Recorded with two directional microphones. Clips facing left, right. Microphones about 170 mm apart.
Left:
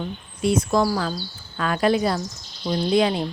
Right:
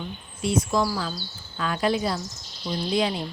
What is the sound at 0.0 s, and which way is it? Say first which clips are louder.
Speech: left 5 dB; 55° left (ahead or behind).